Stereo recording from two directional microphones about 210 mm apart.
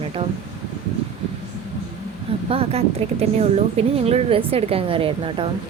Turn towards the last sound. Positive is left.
turn(degrees=-25)  # may be behind; listen again after turning